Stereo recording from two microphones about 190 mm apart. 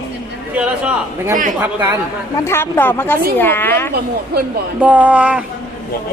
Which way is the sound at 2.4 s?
15° left (ahead or behind).